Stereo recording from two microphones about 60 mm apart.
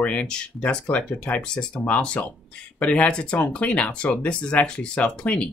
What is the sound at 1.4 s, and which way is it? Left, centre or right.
Speech, centre.